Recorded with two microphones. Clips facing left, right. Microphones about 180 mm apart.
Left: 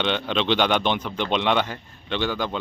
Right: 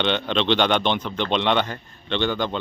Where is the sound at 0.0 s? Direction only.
5° left (ahead or behind).